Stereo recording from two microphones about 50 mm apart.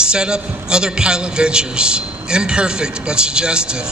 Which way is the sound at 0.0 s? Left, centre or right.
Centre.